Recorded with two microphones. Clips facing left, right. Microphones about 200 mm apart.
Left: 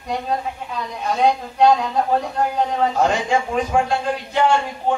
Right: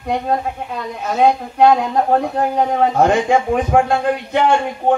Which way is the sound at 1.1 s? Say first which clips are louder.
Right 4 dB; 55° right (ahead or behind).